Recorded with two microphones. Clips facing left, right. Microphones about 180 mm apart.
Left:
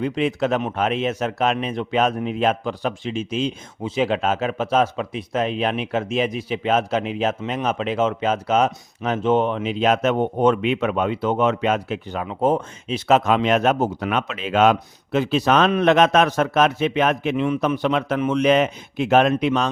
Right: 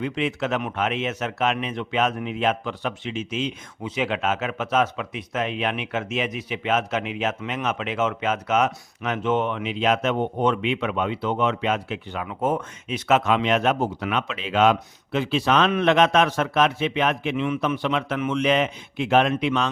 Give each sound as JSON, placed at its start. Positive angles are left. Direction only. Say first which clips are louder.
{"t": 0.0, "sound": "speech", "louder": "left 4 dB", "side_deg": 40}